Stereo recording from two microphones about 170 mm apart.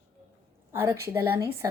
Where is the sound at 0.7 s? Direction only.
15° right (ahead or behind).